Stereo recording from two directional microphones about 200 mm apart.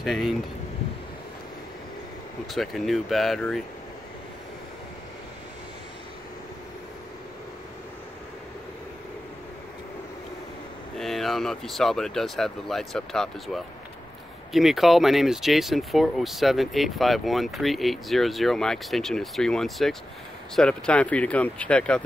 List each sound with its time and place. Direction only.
0.0 s speech: centre (ahead or behind)
2.5 s speech: centre (ahead or behind)
11.0 s speech: centre (ahead or behind)